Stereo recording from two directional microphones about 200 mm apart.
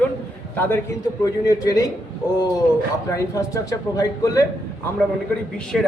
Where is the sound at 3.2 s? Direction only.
15° left (ahead or behind).